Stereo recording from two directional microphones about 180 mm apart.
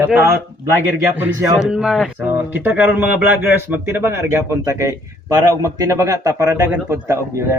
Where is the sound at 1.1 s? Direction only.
10° right (ahead or behind).